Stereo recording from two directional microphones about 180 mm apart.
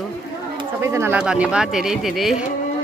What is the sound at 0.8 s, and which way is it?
Speech, 15° right (ahead or behind).